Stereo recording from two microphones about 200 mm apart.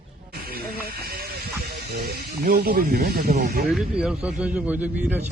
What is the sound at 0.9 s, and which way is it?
Snake, 50° right (ahead or behind).